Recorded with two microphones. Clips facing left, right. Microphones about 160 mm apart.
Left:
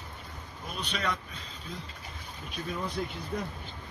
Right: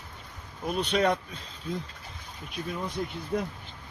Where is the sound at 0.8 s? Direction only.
55° right (ahead or behind).